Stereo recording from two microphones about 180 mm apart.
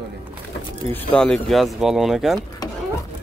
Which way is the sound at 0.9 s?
5° left (ahead or behind).